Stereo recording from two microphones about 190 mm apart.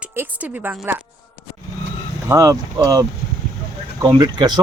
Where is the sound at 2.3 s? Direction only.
15° right (ahead or behind).